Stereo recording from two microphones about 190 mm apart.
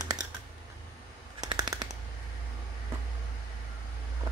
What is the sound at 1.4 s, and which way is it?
Machine gun, 20° right (ahead or behind).